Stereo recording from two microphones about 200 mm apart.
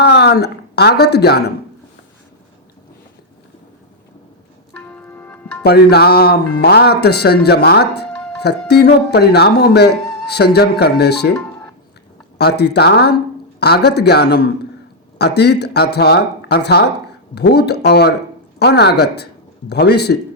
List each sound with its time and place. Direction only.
0.0 s speech: 55° left (ahead or behind)
4.7 s music: 5° left (ahead or behind)
5.6 s speech: 55° left (ahead or behind)
12.4 s speech: 55° left (ahead or behind)